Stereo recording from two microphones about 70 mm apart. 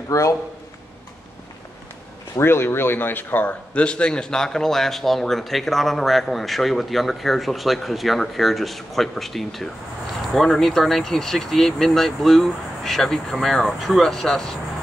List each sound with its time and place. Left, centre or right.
0.1 s a man's voice: left
2.3 s speech: left; by 14.6 s centre